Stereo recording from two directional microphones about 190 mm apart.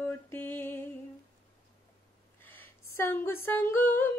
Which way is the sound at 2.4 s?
10° left (ahead or behind).